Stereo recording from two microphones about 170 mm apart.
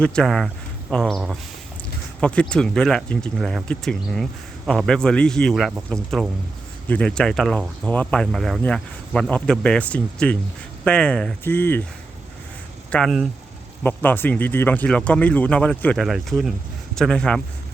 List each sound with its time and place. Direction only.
0.0 s speech: 5° left (ahead or behind)
12.9 s speech: 5° left (ahead or behind)